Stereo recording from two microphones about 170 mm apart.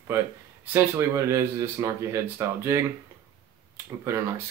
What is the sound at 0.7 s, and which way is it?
Speech, 15° right (ahead or behind).